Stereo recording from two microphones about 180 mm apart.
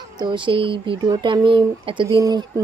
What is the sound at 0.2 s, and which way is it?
Speech, 25° right (ahead or behind).